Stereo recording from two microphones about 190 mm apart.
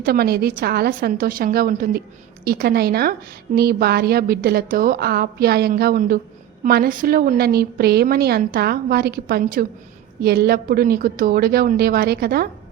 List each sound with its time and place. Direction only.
0.0 s a woman's voice: 55° right (ahead or behind)